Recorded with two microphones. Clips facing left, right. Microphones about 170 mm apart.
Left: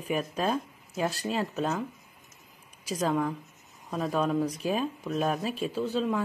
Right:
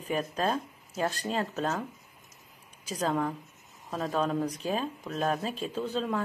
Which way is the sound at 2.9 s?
5° left (ahead or behind).